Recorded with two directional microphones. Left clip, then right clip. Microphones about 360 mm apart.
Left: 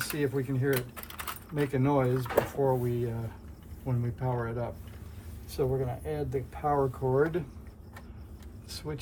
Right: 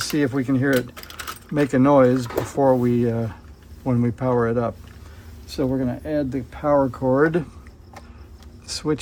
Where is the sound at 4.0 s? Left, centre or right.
Centre.